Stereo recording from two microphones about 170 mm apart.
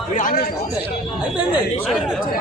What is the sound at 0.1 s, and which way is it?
Speech, 50° left (ahead or behind).